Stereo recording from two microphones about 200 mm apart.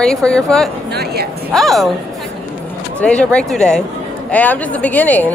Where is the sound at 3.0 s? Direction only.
5° left (ahead or behind).